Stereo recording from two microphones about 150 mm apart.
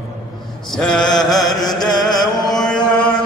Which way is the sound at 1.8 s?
30° left (ahead or behind).